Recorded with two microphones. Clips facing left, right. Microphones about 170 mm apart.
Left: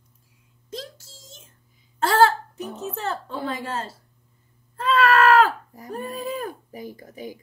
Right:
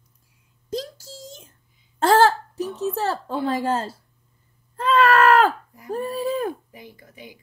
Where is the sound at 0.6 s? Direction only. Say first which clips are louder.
Right 7 dB; 35° right (ahead or behind).